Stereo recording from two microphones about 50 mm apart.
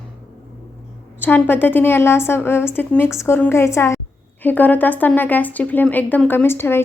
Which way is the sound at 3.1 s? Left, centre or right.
Left.